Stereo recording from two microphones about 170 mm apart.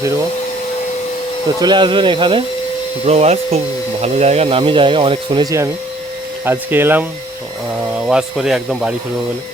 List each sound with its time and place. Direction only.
1.5 s speech: 25° right (ahead or behind); by 9.0 s 5° right (ahead or behind)